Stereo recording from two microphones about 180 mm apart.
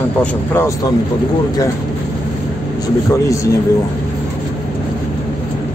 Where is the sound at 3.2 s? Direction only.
15° left (ahead or behind).